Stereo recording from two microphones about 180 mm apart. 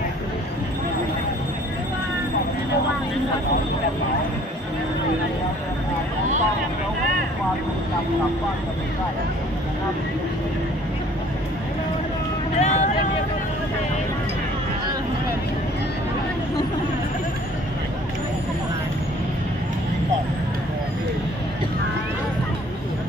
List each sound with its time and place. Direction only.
12.5 s vehicle: 40° left (ahead or behind)